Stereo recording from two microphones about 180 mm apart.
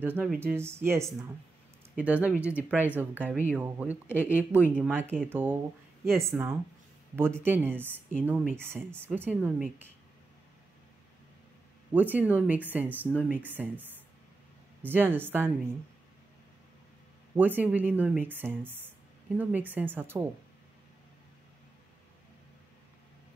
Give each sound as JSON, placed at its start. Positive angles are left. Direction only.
{"t": 0.0, "sound": "speech", "side_deg": -5}
{"t": 4.1, "sound": "speech", "side_deg": 10}
{"t": 4.4, "sound": "speech", "side_deg": -10}
{"t": 11.9, "sound": "speech", "side_deg": -10}
{"t": 17.4, "sound": "speech", "side_deg": -10}